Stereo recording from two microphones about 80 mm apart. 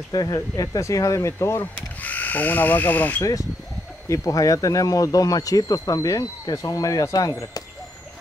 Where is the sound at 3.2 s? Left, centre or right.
Left.